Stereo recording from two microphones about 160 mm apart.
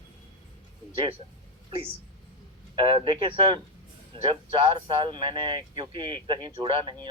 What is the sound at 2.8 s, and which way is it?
Speech, 30° right (ahead or behind).